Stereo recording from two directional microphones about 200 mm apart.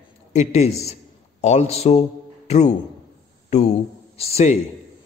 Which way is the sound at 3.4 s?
35° left (ahead or behind).